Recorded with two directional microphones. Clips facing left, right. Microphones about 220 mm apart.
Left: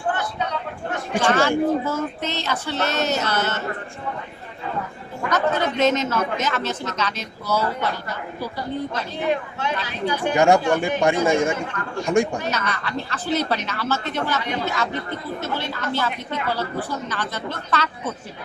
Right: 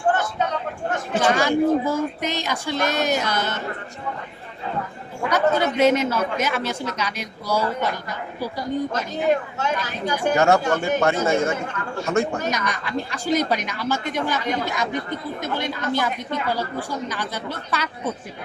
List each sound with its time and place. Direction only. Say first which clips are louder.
0.1 s a sound: right 3 dB; 45° right (ahead or behind)
1.2 s speech: even; 15° right (ahead or behind)
5.3 s speech: right 2 dB; 10° right (ahead or behind)
8.9 s speech: right 3 dB; 45° right (ahead or behind)
10.3 s speech: left 2 dB; 15° left (ahead or behind)
12.5 s speech: right 1 dB; 15° right (ahead or behind)